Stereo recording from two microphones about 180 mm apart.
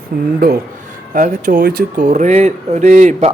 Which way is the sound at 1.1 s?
45° right (ahead or behind).